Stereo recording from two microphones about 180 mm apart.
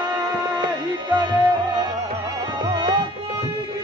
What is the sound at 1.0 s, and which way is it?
Music, 25° right (ahead or behind).